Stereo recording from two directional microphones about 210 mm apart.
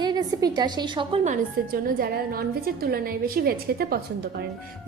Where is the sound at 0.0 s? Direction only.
20° right (ahead or behind).